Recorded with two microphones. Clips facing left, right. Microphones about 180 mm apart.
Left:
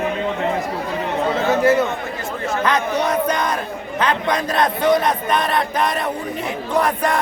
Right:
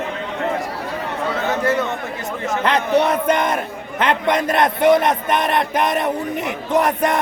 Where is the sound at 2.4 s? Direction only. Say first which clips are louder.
Even; 25° right (ahead or behind).